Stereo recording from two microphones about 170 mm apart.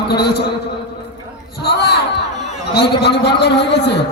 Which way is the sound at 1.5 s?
70° left (ahead or behind).